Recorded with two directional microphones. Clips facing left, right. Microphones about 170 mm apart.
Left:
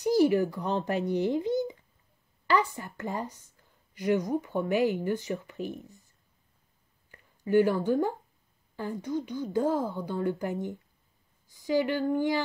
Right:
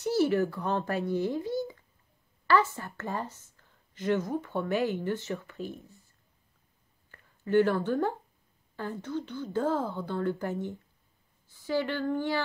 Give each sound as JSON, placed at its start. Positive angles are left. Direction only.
{"t": 0.0, "sound": "a woman's voice", "side_deg": 15}
{"t": 7.1, "sound": "a woman's voice", "side_deg": 10}